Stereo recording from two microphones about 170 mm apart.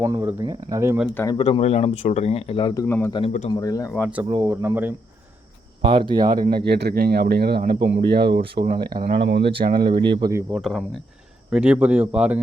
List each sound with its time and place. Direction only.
0.0 s speech: 15° right (ahead or behind)
1.1 s speech: 15° left (ahead or behind)
1.4 s speech: 35° left (ahead or behind)
2.8 s speech: 10° left (ahead or behind)
3.1 s speech: 30° left (ahead or behind)
3.5 s speech: 20° left (ahead or behind)
4.4 s speech: 10° right (ahead or behind)
5.8 s speech: 30° right (ahead or behind)
6.7 s speech: 70° right (ahead or behind); by 9.6 s 90° right
9.6 s speech: 70° right (ahead or behind)
9.9 s speech: 25° right (ahead or behind)
10.5 s speech: centre (ahead or behind)